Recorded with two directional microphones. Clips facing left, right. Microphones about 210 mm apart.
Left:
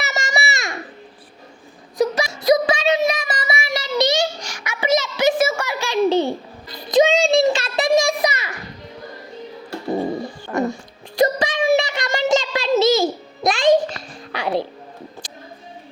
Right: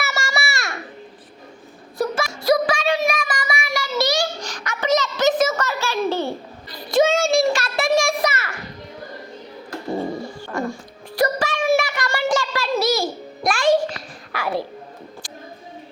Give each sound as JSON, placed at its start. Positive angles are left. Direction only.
{"t": 0.0, "sound": "babbling", "side_deg": 20}
{"t": 2.0, "sound": "wail", "side_deg": 20}
{"t": 2.4, "sound": "child singing", "side_deg": 20}
{"t": 6.8, "sound": "a sound", "side_deg": 20}
{"t": 10.4, "sound": "music", "side_deg": 20}
{"t": 11.2, "sound": "a sound", "side_deg": 20}